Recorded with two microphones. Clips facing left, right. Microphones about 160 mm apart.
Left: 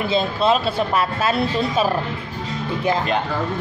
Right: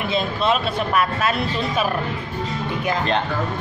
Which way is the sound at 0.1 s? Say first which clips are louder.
Left 2 dB; 30° left (ahead or behind).